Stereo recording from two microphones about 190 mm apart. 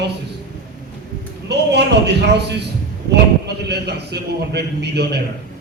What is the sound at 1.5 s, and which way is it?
A man's voice, 60° right (ahead or behind).